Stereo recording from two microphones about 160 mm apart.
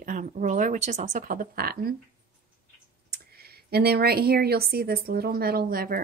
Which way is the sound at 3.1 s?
80° right.